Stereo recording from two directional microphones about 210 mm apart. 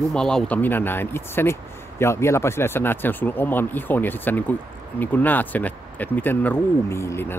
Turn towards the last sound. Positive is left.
turn(degrees=10)  # may be behind; listen again after turning